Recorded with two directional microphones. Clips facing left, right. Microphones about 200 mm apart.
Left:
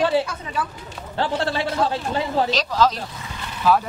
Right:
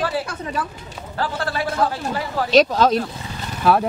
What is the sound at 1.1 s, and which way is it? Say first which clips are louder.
A man's voice: left 2 dB; 25° left (ahead or behind).